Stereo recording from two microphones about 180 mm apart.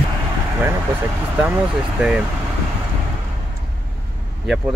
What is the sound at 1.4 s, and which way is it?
Speech, 5° right (ahead or behind).